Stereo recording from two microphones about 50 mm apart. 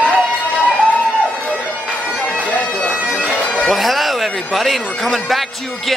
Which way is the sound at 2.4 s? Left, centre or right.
Left.